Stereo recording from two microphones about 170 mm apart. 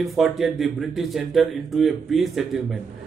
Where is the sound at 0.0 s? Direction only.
Centre (ahead or behind).